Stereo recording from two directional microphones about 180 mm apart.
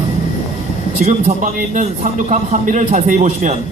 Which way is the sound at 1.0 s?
45° right (ahead or behind).